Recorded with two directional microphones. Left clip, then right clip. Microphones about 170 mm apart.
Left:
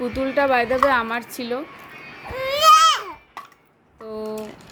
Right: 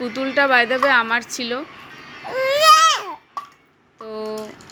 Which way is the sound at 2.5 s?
65° right (ahead or behind).